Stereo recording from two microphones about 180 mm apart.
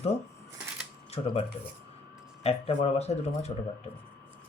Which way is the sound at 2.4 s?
35° left (ahead or behind).